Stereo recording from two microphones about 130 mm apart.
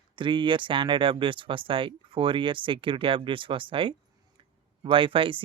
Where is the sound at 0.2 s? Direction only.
40° right (ahead or behind).